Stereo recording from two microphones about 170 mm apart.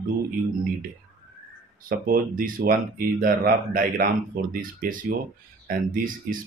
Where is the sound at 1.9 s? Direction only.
55° right (ahead or behind).